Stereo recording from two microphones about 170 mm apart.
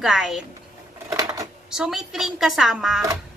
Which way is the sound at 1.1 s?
20° right (ahead or behind).